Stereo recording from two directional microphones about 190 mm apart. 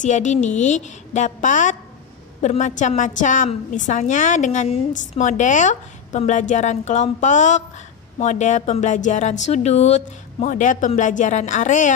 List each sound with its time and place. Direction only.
0.0 s a woman's voice: 40° left (ahead or behind)